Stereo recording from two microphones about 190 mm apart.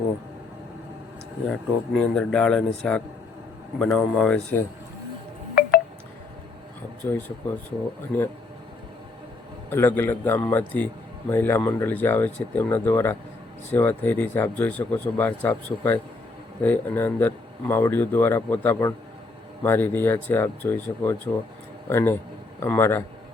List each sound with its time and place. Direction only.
1.5 s speech: 5° left (ahead or behind)
5.6 s telephone dialing: 55° left (ahead or behind)
7.0 s speech: 15° left (ahead or behind)
9.6 s speech: 10° left (ahead or behind)